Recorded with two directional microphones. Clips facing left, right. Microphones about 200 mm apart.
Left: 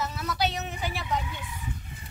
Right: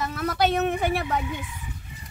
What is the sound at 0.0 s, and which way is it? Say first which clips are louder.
A woman's voice: right 5 dB; 55° right (ahead or behind).